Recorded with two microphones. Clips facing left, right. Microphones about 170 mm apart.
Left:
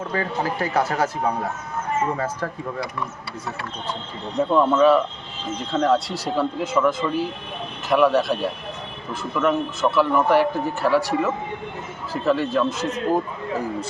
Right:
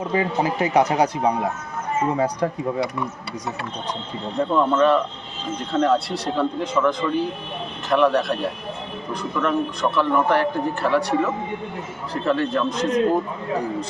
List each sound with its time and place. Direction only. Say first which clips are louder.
0.0 s speech: right 3 dB; 15° right (ahead or behind)
4.5 s a man's voice: left 2 dB; 5° left (ahead or behind)